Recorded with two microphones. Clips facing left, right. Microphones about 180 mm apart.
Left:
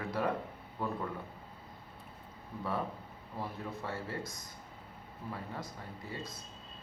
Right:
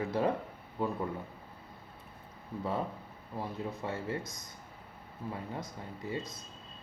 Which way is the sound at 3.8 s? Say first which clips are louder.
Right 3 dB; 20° right (ahead or behind).